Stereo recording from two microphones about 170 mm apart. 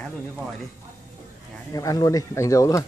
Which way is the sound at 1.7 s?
20° left (ahead or behind).